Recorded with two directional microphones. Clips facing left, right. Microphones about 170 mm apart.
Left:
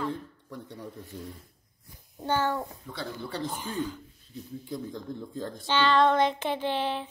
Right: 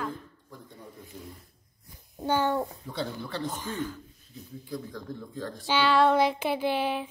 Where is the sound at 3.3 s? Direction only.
10° left (ahead or behind).